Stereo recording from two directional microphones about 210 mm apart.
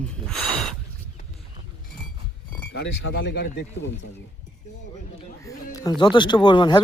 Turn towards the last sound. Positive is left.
turn(degrees=20)  # may be behind; listen again after turning